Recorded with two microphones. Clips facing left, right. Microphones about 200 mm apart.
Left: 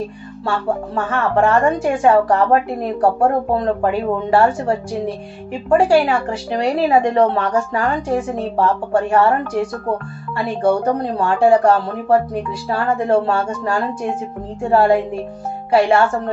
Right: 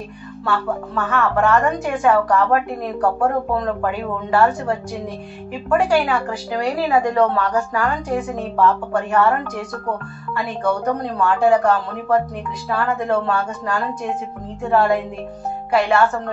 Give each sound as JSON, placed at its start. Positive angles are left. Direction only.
{"t": 0.5, "sound": "a woman's voice", "side_deg": 30}